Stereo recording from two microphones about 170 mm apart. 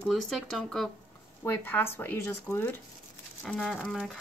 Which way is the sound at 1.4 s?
15° left (ahead or behind).